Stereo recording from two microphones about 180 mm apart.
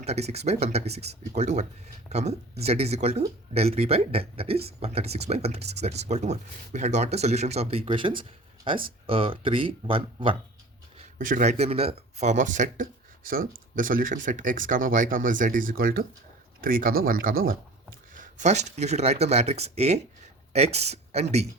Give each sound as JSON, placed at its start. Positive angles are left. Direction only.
{"t": 0.0, "sound": "speech", "side_deg": -35}
{"t": 11.2, "sound": "speech", "side_deg": -45}